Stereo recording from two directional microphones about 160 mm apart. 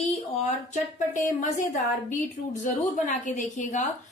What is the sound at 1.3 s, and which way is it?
Speech, 50° left (ahead or behind).